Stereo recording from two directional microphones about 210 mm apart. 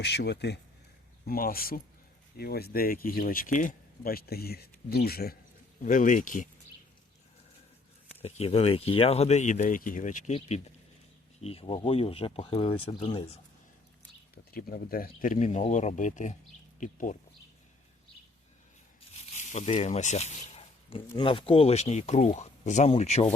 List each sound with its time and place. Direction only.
0.0 s speech: 55° left (ahead or behind); by 6.5 s 40° left (ahead or behind)
8.2 s speech: 30° left (ahead or behind)
11.3 s speech: 30° left (ahead or behind)
14.5 s speech: 45° left (ahead or behind)
19.2 s speech: 30° left (ahead or behind)